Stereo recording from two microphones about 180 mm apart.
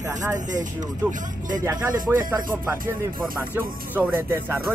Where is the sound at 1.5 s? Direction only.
20° right (ahead or behind).